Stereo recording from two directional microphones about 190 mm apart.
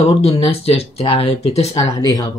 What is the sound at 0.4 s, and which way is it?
Speech, 30° left (ahead or behind).